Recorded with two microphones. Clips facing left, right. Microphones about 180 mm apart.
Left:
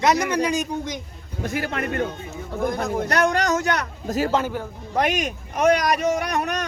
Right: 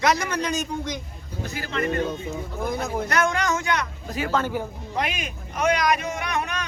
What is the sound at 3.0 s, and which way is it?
Speech, 35° left (ahead or behind).